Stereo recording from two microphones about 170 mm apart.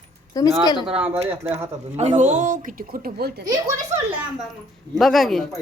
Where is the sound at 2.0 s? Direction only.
45° right (ahead or behind); by 3.4 s 65° right (ahead or behind).